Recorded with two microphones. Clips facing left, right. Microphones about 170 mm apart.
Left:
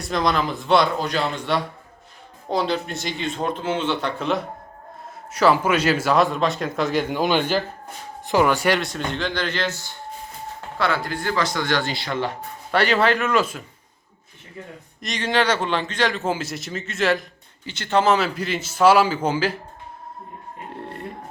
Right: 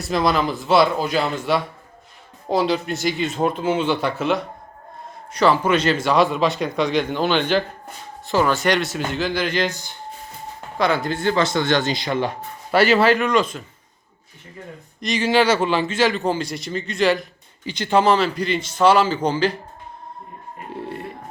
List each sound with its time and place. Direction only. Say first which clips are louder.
0.0 s a man's voice: right 2 dB; 5° right (ahead or behind)
12.7 s a man's voice: right 4 dB; 5° right (ahead or behind)
15.0 s a man's voice: right 4 dB; 5° right (ahead or behind)
17.7 s speech: right 3 dB; 15° right (ahead or behind)
18.0 s speech: right 2 dB; 5° left (ahead or behind)
20.7 s a sound: right 6 dB; 5° right (ahead or behind)